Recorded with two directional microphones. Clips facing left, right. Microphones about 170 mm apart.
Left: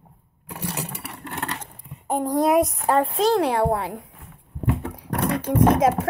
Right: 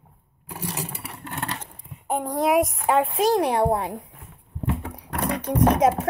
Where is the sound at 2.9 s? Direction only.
5° right (ahead or behind).